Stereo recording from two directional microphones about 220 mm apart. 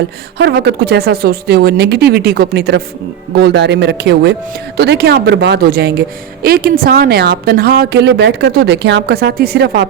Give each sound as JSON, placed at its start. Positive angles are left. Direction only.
{"t": 0.3, "sound": "speech", "side_deg": -50}